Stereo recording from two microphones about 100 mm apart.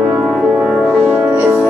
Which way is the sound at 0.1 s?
15° right (ahead or behind).